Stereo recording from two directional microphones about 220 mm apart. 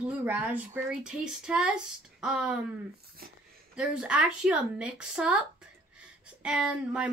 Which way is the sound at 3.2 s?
45° right (ahead or behind).